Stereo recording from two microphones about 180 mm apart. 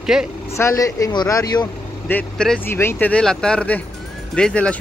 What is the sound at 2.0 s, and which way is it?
Speech, 5° left (ahead or behind).